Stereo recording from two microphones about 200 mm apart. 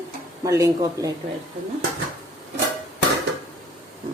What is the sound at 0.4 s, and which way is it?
Speech, 15° right (ahead or behind).